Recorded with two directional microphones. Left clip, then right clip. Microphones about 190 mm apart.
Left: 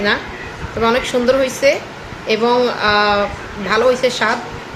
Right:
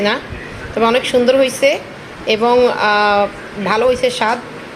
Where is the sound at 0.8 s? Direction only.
15° right (ahead or behind).